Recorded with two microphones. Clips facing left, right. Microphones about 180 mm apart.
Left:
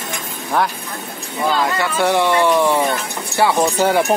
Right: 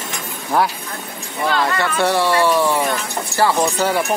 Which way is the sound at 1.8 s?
10° left (ahead or behind).